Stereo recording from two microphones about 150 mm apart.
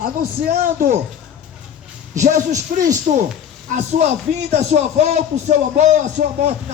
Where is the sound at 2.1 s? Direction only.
55° right (ahead or behind).